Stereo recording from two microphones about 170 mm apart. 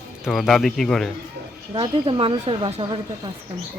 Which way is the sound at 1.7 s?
30° right (ahead or behind).